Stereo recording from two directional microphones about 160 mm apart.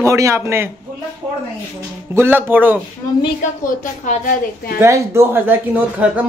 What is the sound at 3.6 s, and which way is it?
Speech, 55° left (ahead or behind).